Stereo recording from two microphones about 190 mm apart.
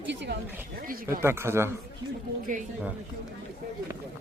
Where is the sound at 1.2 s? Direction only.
15° right (ahead or behind).